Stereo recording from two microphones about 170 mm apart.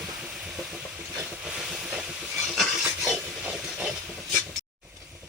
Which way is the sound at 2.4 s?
Centre (ahead or behind).